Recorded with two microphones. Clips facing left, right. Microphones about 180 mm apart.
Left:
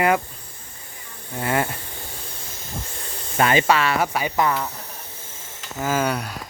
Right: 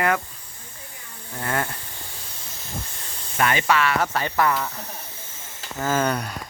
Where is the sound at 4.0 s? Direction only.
10° left (ahead or behind).